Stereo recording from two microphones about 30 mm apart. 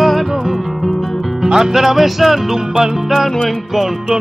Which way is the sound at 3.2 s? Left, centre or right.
Centre.